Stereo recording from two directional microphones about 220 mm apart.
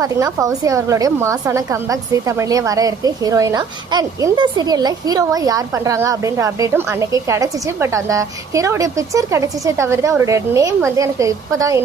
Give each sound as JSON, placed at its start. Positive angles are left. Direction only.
{"t": 0.0, "sound": "a woman's voice", "side_deg": -15}